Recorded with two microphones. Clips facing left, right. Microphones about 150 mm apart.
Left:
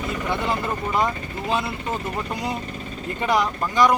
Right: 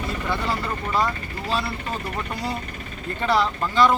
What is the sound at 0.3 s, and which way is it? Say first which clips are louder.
Speech: left 2 dB; 20° left (ahead or behind).